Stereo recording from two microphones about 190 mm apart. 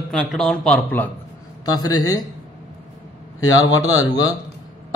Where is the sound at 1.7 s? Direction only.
20° left (ahead or behind).